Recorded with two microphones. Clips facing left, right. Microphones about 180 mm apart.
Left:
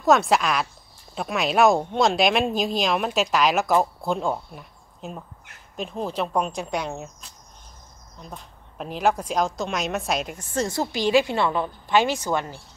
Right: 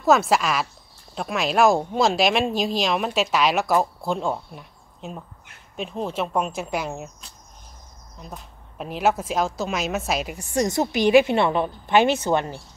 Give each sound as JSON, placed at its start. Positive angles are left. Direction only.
{"t": 0.0, "sound": "a woman's voice", "side_deg": 0}